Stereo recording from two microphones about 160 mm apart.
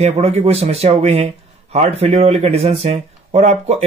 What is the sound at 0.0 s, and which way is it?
A man's voice, 45° right (ahead or behind).